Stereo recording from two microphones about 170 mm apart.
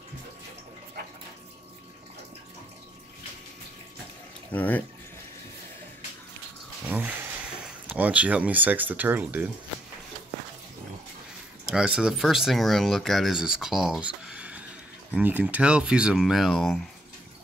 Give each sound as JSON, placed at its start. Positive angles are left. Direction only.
{"t": 4.5, "sound": "speech", "side_deg": 10}
{"t": 6.9, "sound": "a sound", "side_deg": -10}
{"t": 7.9, "sound": "speech", "side_deg": -5}
{"t": 11.6, "sound": "speech", "side_deg": -5}